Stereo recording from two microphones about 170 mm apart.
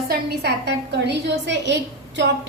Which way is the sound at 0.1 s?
70° right (ahead or behind).